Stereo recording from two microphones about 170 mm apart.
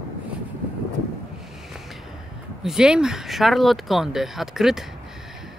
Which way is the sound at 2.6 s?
5° right (ahead or behind).